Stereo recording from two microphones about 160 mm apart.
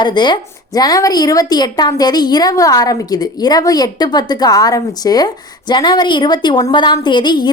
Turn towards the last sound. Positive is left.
turn(degrees=25)  # may be behind; listen again after turning